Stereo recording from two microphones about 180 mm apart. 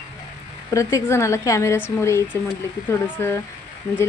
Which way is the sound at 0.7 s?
15° left (ahead or behind).